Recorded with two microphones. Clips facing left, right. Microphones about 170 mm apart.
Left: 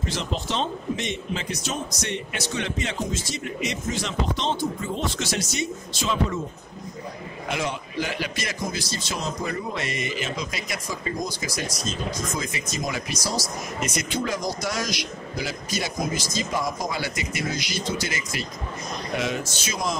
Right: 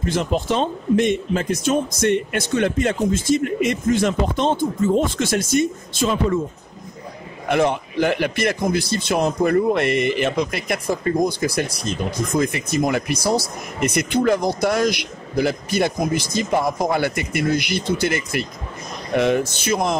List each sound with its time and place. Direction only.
0.0 s speech: 50° right (ahead or behind)
7.4 s a man's voice: 55° right (ahead or behind)